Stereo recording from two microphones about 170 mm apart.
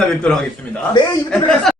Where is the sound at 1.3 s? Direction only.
5° left (ahead or behind).